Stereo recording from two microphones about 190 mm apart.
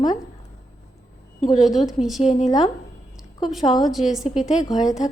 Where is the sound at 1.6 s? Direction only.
Centre (ahead or behind).